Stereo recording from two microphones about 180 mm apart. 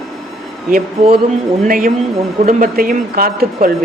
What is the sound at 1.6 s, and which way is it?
Speech, 50° right (ahead or behind).